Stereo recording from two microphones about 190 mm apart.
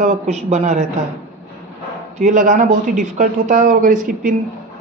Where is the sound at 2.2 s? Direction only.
40° right (ahead or behind).